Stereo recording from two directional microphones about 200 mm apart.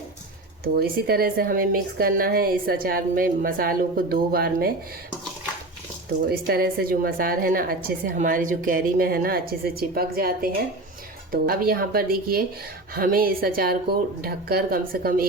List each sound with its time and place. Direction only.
0.6 s a woman's voice: 50° right (ahead or behind)
6.2 s a woman's voice: 50° right (ahead or behind)